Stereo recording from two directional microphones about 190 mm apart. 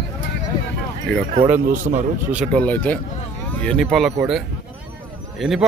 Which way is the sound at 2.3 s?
Centre (ahead or behind).